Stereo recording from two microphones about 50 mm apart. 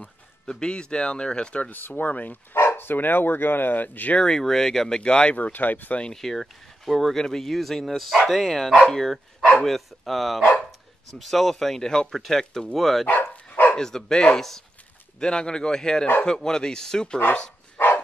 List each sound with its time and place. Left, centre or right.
0.5 s speech: centre
1.7 s speech: left
4.2 s speech: centre
5.5 s speech: left
6.2 s speech: centre